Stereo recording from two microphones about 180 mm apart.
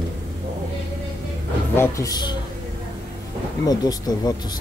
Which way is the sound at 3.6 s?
20° left (ahead or behind).